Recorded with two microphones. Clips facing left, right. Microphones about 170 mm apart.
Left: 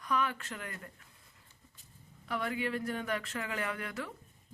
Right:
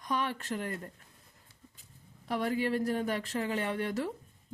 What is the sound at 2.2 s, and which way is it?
Speech, 35° right (ahead or behind).